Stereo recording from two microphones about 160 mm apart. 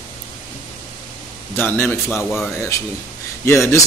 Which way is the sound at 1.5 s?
15° left (ahead or behind).